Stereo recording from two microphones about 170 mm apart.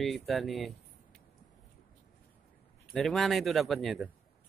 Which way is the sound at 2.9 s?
Centre (ahead or behind).